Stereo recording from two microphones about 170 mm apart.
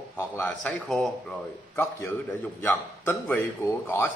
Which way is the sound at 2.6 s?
10° left (ahead or behind).